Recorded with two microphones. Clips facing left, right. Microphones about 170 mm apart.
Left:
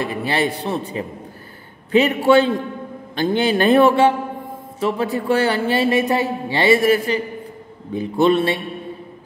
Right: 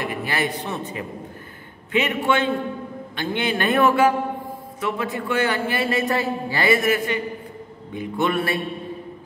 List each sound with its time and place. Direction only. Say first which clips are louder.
0.0 s a woman's voice: left 4 dB; 30° left (ahead or behind)